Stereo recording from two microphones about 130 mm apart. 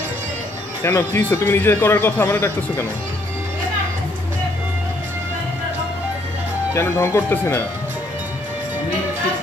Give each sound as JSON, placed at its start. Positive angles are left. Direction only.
{"t": 0.8, "sound": "a man's voice", "side_deg": 20}
{"t": 6.7, "sound": "speech", "side_deg": 20}